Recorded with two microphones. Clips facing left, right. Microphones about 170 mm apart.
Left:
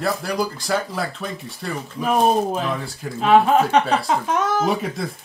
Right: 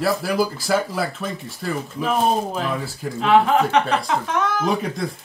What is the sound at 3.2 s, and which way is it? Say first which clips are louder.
Speech: left 1 dB; 25° left (ahead or behind).